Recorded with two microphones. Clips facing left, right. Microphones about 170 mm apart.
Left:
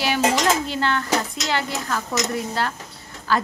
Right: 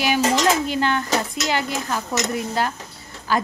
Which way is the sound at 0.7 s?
15° right (ahead or behind).